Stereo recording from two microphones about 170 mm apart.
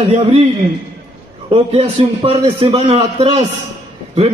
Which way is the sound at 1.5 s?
35° right (ahead or behind).